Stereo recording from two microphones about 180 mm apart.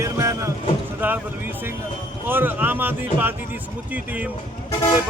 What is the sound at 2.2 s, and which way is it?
Speech, 10° right (ahead or behind).